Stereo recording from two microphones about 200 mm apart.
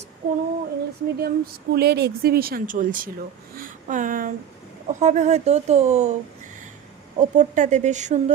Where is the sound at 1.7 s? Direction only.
55° right (ahead or behind); by 6.2 s 35° right (ahead or behind).